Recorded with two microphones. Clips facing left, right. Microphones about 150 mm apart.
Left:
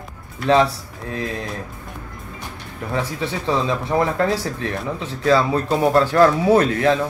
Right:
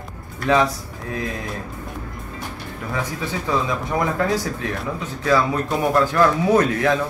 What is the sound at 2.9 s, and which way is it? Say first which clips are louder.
Speech: left 2 dB; 25° left (ahead or behind).